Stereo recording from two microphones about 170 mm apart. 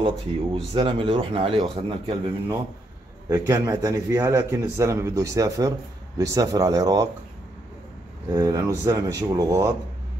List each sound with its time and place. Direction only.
0.0 s speech: 30° right (ahead or behind)
3.3 s a man's voice: 15° right (ahead or behind)
8.3 s a man's voice: 20° right (ahead or behind)